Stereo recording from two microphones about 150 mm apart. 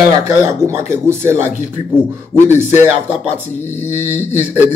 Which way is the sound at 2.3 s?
5° left (ahead or behind).